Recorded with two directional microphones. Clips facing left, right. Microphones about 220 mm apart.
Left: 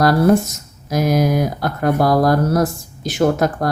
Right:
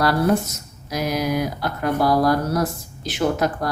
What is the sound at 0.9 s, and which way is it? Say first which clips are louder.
Speech: left 6 dB; 45° left (ahead or behind).